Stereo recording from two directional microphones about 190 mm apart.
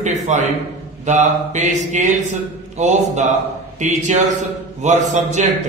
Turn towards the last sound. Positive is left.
turn(degrees=-40)  # may be behind; listen again after turning